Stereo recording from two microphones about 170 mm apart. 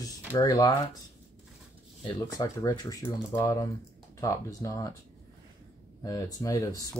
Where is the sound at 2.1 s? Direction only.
20° left (ahead or behind).